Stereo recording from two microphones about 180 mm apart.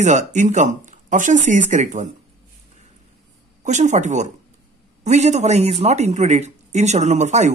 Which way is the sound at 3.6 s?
40° right (ahead or behind).